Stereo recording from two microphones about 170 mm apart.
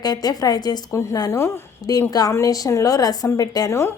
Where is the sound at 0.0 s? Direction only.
20° left (ahead or behind).